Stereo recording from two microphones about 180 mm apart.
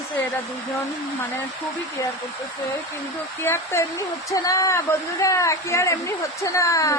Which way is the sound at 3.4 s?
15° left (ahead or behind).